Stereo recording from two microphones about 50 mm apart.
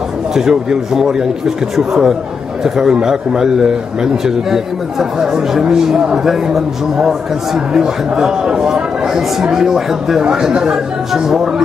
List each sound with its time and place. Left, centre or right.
0.3 s a man's voice: centre